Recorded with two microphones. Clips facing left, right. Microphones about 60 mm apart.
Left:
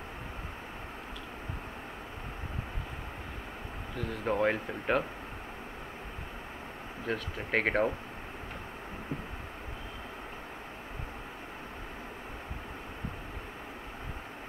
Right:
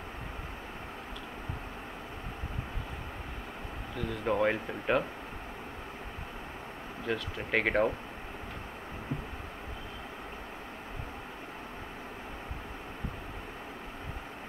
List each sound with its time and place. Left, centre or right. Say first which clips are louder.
3.9 s speech: right 1 dB; left
4.3 s speech: even; centre
7.1 s speech: right 1 dB; left